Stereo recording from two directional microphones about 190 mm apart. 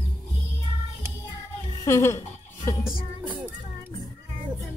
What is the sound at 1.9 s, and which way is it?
Music, 15° left (ahead or behind).